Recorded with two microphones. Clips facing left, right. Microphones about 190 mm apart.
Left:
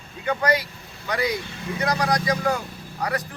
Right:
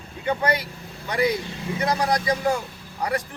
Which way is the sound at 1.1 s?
25° right (ahead or behind).